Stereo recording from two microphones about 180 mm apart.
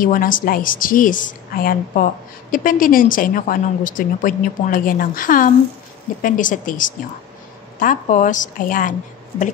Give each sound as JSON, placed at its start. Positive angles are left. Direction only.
{"t": 0.0, "sound": "a woman's voice", "side_deg": 50}